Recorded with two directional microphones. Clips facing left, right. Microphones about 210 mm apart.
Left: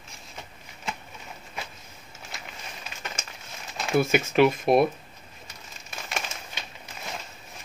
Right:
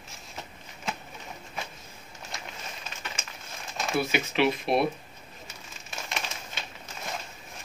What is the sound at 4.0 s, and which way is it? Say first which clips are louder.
Speech: left 6 dB; 45° left (ahead or behind).